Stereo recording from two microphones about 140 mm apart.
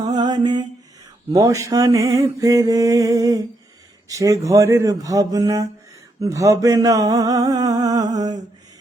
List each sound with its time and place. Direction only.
0.1 s mantra: 30° right (ahead or behind)